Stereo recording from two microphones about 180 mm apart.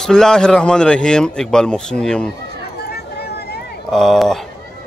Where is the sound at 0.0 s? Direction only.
5° left (ahead or behind).